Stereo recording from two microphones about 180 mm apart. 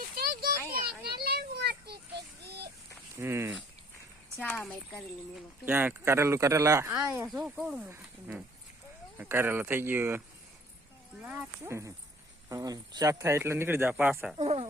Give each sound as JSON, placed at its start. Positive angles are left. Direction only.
{"t": 0.2, "sound": "a sound", "side_deg": -55}
{"t": 1.2, "sound": "child singing", "side_deg": -60}
{"t": 3.2, "sound": "speech", "side_deg": -15}
{"t": 4.4, "sound": "a woman's voice", "side_deg": 5}
{"t": 5.6, "sound": "a woman's voice", "side_deg": -10}
{"t": 9.1, "sound": "speech", "side_deg": -15}
{"t": 11.3, "sound": "speech", "side_deg": -10}
{"t": 14.3, "sound": "speech", "side_deg": -35}